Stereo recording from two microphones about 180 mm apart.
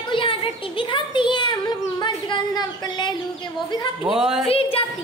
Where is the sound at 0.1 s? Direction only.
30° left (ahead or behind).